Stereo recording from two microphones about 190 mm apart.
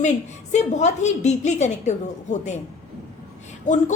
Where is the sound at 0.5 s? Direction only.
35° left (ahead or behind).